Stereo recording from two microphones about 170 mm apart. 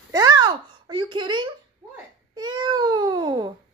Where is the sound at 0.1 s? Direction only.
25° right (ahead or behind).